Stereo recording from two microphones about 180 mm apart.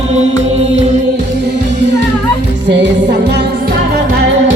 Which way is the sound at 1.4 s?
70° right (ahead or behind).